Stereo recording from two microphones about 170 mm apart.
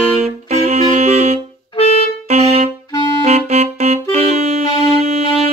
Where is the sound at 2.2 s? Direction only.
40° right (ahead or behind).